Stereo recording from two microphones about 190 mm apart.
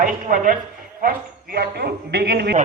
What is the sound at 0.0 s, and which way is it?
A woman's voice, 45° right (ahead or behind).